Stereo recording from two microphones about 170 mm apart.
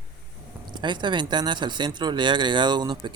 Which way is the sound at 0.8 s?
25° right (ahead or behind).